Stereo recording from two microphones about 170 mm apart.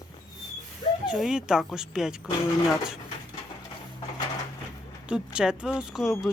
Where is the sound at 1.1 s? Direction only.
5° right (ahead or behind).